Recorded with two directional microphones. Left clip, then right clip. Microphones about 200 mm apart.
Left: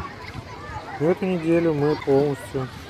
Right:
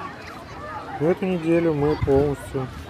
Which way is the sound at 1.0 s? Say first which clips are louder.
Even; centre (ahead or behind).